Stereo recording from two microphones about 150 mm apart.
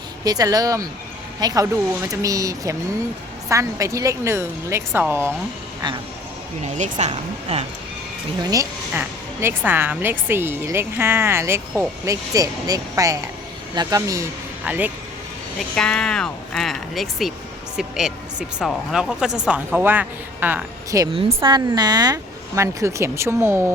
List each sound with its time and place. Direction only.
0.3 s speech: 25° right (ahead or behind)
6.6 s speech: 50° right (ahead or behind)
8.9 s speech: 15° right (ahead or behind)
14.6 s speech: 10° right (ahead or behind)
15.7 s speech: 5° left (ahead or behind); by 21.1 s 20° right (ahead or behind)
21.1 s speech: 35° right (ahead or behind); by 23.7 s 15° right (ahead or behind)